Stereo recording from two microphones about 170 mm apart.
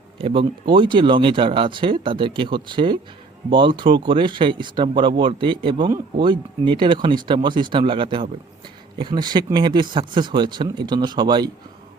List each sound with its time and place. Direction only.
0.2 s speech: 30° right (ahead or behind)